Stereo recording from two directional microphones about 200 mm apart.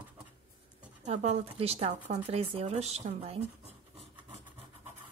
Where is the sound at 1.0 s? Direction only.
35° right (ahead or behind).